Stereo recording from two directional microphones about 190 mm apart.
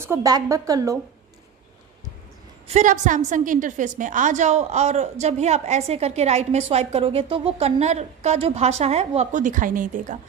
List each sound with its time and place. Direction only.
0.0 s a woman's voice: 15° right (ahead or behind)
2.7 s a woman's voice: 40° right (ahead or behind)